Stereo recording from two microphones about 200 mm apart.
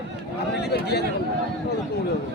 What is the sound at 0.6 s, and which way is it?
Speech, 55° left (ahead or behind).